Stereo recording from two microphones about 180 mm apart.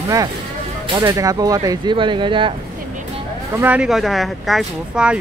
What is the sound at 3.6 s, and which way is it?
Speech, 5° right (ahead or behind).